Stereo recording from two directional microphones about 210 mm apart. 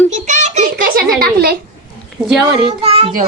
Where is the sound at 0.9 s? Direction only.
50° right (ahead or behind).